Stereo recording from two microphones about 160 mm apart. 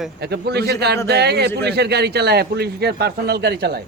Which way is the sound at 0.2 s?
90° right.